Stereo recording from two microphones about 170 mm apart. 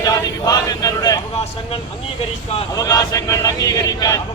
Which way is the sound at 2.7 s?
20° left (ahead or behind).